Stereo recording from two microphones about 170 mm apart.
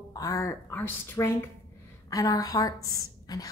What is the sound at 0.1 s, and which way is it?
A woman's voice, 20° left (ahead or behind).